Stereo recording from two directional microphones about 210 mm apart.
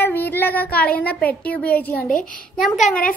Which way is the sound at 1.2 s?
5° left (ahead or behind).